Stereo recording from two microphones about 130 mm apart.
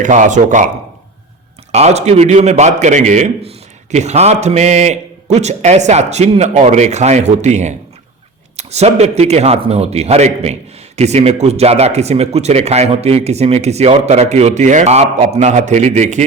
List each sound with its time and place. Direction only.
0.0 s a man's voice: 70° right (ahead or behind)
1.7 s a man's voice: 55° right (ahead or behind)